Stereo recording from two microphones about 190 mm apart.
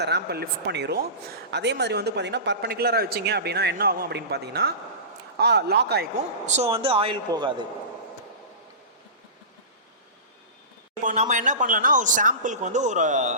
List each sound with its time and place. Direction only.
0.0 s speech: 60° right (ahead or behind)
6.4 s a woman's voice: 35° right (ahead or behind)
11.0 s speech: 40° right (ahead or behind)